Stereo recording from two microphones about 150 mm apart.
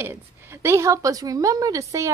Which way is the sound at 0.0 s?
15° right (ahead or behind).